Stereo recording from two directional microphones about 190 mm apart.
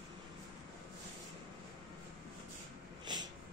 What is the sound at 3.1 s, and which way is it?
Snort, 25° right (ahead or behind).